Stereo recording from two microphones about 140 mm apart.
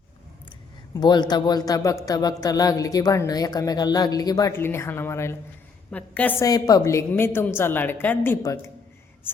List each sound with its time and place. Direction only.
0.9 s a woman's voice: 30° left (ahead or behind); by 6.3 s 10° left (ahead or behind)
6.4 s a woman's voice: 25° left (ahead or behind)